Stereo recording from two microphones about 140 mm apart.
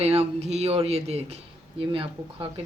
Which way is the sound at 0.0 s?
45° right (ahead or behind).